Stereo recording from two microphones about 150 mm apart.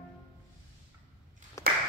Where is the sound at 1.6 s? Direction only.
20° left (ahead or behind).